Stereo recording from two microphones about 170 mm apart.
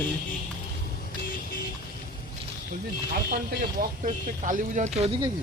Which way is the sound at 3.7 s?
55° right (ahead or behind).